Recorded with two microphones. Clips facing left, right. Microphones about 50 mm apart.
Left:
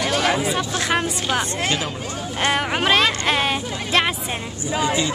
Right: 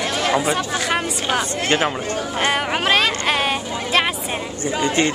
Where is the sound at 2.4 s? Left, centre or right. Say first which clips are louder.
Left 1 dB; centre.